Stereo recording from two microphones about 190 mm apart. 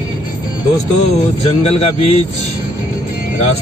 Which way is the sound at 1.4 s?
30° left (ahead or behind).